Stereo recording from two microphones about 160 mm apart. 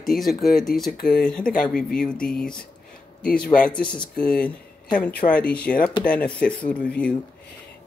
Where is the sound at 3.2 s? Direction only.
65° left (ahead or behind).